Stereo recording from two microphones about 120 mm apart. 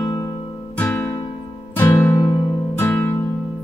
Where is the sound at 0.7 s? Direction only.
15° left (ahead or behind).